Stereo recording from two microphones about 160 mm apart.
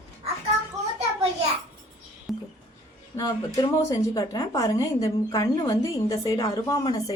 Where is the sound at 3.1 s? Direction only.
20° left (ahead or behind).